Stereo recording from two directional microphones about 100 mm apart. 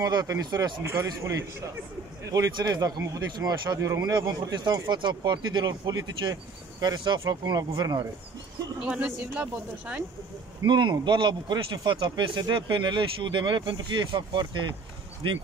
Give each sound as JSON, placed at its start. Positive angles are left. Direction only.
{"t": 0.0, "sound": "speech", "side_deg": -40}
{"t": 2.3, "sound": "speech", "side_deg": -35}
{"t": 4.8, "sound": "a man's voice", "side_deg": -50}
{"t": 8.8, "sound": "speech", "side_deg": -15}
{"t": 10.6, "sound": "a man's voice", "side_deg": -45}